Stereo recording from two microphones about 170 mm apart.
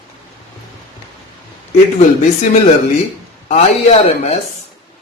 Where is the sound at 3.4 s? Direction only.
40° left (ahead or behind).